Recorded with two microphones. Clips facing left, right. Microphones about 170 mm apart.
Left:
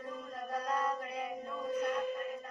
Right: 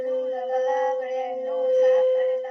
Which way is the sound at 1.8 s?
45° right (ahead or behind).